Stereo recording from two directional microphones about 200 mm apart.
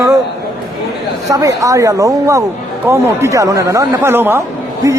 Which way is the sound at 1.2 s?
15° right (ahead or behind).